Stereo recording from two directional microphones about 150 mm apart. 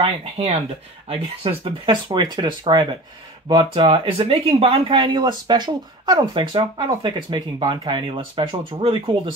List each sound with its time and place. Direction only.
0.0 s speech: 40° right (ahead or behind)